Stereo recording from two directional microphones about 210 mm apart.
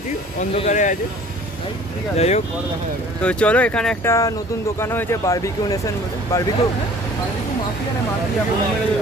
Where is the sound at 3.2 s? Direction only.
5° left (ahead or behind).